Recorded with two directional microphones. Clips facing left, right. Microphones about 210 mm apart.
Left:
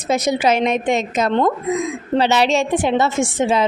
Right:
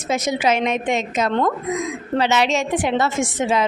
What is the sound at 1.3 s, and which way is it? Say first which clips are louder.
A woman's voice: left 5 dB; 25° left (ahead or behind).